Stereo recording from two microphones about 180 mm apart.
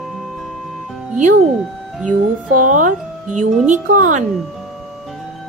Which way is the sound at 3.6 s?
45° right (ahead or behind).